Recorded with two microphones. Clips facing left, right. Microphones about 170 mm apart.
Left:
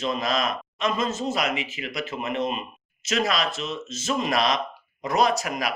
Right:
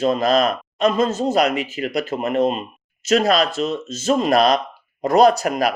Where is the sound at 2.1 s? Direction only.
50° right (ahead or behind).